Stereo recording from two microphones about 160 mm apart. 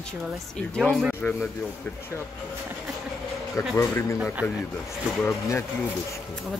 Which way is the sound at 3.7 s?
15° left (ahead or behind).